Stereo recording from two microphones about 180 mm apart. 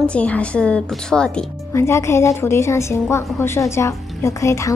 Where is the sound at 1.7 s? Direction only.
15° left (ahead or behind).